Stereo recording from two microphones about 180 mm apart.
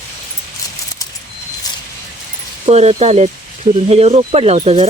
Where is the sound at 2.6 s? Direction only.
35° right (ahead or behind).